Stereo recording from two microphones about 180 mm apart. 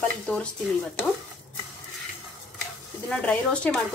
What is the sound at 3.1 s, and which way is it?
Speech, 5° left (ahead or behind).